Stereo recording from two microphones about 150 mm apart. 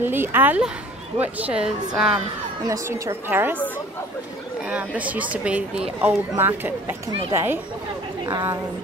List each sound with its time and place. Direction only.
0.0 s a woman's voice: 15° right (ahead or behind)
2.6 s speech: 20° right (ahead or behind)
4.6 s speech: 10° right (ahead or behind)